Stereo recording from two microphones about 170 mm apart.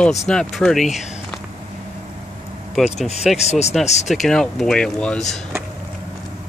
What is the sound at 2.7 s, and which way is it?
Speech, centre (ahead or behind).